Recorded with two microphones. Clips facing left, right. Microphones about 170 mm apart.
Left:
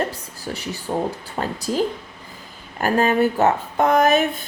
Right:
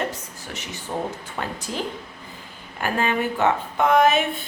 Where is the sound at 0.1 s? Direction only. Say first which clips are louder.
Left 4 dB; 35° left (ahead or behind).